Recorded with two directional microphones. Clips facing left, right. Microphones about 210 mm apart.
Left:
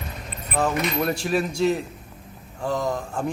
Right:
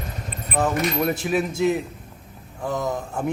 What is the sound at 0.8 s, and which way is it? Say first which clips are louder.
Speech: right 2 dB; 10° right (ahead or behind).